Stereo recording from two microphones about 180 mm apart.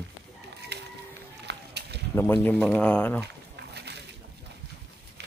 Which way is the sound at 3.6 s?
70° right (ahead or behind).